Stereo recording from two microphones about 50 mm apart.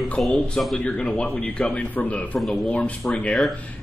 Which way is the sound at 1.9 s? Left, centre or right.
Left.